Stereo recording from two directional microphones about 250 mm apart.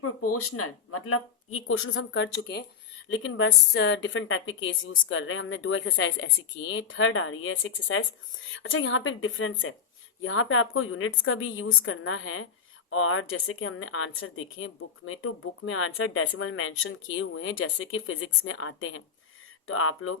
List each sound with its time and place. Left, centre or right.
0.0 s a woman's voice: left